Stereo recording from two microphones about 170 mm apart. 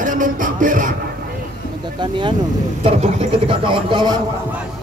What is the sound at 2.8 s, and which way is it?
Speech, 35° right (ahead or behind).